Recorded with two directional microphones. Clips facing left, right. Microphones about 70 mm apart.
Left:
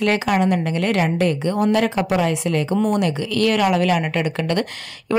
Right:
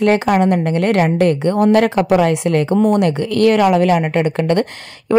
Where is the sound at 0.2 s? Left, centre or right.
Right.